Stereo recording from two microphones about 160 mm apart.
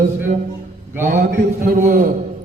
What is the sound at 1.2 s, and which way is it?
Speech, 65° right (ahead or behind).